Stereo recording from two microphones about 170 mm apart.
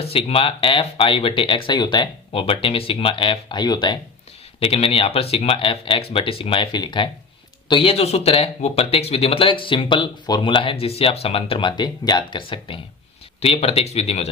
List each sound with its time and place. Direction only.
0.0 s speech: 35° left (ahead or behind)